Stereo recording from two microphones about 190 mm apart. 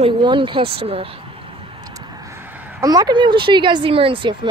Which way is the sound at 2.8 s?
20° right (ahead or behind).